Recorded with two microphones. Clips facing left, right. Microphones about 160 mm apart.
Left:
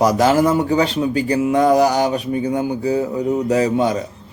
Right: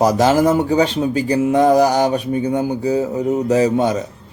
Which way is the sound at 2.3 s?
35° right (ahead or behind).